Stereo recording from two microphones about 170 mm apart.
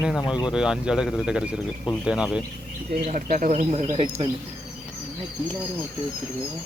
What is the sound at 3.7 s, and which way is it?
Speech, 35° right (ahead or behind).